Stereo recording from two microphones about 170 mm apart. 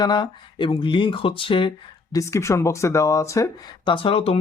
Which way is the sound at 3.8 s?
30° left (ahead or behind).